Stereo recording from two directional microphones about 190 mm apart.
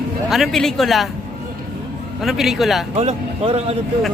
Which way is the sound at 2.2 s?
Centre (ahead or behind).